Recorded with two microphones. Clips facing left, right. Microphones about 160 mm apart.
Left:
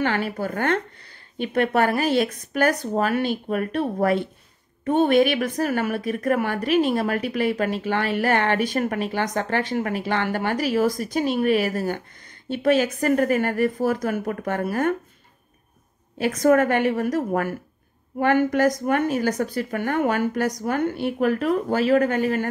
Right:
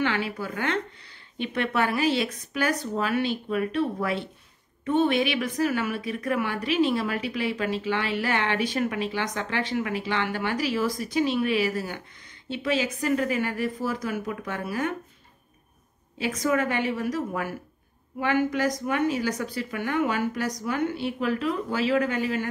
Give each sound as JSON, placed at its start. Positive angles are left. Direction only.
{"t": 0.0, "sound": "a woman's voice", "side_deg": 45}
{"t": 16.2, "sound": "a woman's voice", "side_deg": 55}